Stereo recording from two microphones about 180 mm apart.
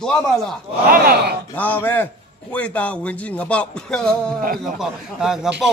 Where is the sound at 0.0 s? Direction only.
5° left (ahead or behind).